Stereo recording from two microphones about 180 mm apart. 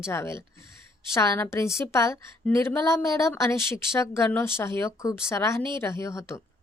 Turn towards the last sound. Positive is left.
turn(degrees=15)  # may be behind; listen again after turning